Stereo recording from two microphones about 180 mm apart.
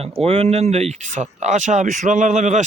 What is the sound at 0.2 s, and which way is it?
Speech, 35° right (ahead or behind).